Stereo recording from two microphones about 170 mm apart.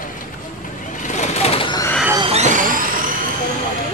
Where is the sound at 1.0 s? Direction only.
45° left (ahead or behind); by 1.9 s 30° left (ahead or behind).